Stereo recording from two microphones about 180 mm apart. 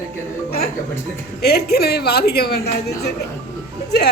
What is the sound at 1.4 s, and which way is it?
Speech, 60° left (ahead or behind).